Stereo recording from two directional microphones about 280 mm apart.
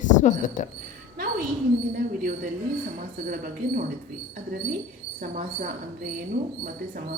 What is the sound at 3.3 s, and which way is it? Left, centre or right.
Speech, right.